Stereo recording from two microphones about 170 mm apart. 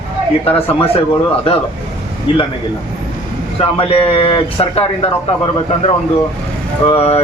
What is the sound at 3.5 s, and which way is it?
Speech, 30° left (ahead or behind).